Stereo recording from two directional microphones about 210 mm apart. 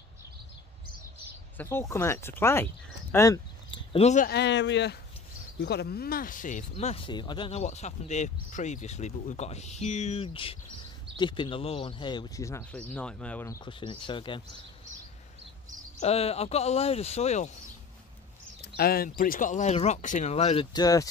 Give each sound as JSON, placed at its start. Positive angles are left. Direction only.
{"t": 1.6, "sound": "speech", "side_deg": 10}
{"t": 4.3, "sound": "speech", "side_deg": 55}
{"t": 13.7, "sound": "speech", "side_deg": 25}
{"t": 16.0, "sound": "speech", "side_deg": 30}
{"t": 18.8, "sound": "speech", "side_deg": 45}